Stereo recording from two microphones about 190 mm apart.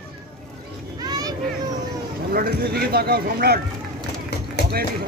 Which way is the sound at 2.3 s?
55° right (ahead or behind).